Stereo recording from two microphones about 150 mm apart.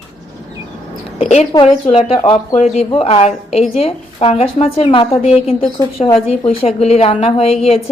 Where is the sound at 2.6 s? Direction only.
45° left (ahead or behind).